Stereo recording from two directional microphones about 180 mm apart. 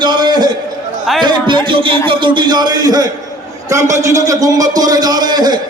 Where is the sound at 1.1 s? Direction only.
Centre (ahead or behind).